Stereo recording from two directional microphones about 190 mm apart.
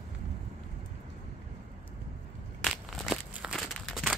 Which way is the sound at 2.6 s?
Centre (ahead or behind).